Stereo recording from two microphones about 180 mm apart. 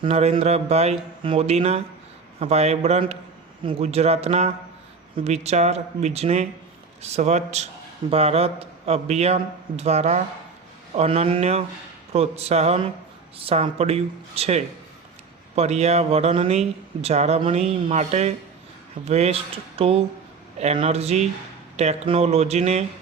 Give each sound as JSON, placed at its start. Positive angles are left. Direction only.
{"t": 0.0, "sound": "speech", "side_deg": -35}